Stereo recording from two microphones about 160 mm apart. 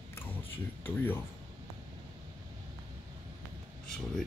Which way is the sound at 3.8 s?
5° left (ahead or behind).